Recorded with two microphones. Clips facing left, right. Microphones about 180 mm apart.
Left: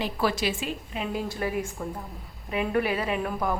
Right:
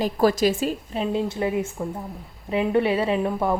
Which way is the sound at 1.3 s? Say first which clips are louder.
Right 5 dB; 20° right (ahead or behind).